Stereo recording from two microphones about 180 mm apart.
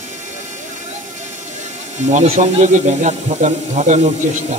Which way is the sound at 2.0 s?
40° right (ahead or behind).